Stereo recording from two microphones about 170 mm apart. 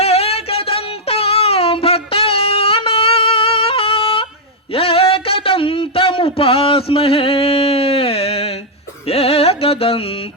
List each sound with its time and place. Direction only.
0.0 s music: 35° left (ahead or behind)
4.7 s a sound: 35° left (ahead or behind)
9.0 s music: 35° left (ahead or behind)